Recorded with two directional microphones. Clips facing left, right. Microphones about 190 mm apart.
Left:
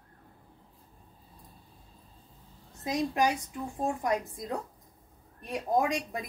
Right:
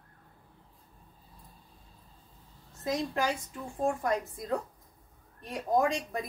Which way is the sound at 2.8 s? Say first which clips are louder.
Left 3 dB; 15° left (ahead or behind).